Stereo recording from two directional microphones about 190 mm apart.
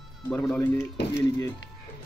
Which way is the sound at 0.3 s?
5° left (ahead or behind).